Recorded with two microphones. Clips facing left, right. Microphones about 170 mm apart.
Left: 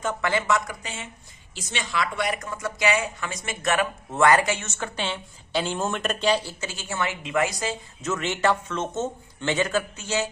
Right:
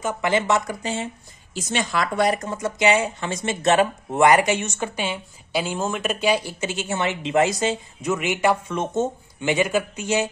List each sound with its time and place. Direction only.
0.0 s speech: 20° right (ahead or behind)
1.5 s speech: 45° right (ahead or behind); by 7.7 s 25° right (ahead or behind)
8.0 s speech: 10° right (ahead or behind)